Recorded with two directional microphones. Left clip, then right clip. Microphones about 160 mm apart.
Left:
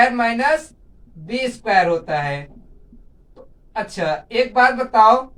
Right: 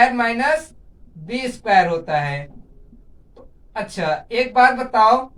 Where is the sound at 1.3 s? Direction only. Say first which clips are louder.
Right 1 dB; 25° right (ahead or behind).